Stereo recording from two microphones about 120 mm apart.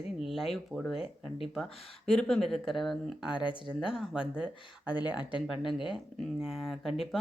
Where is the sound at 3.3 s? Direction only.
40° left (ahead or behind).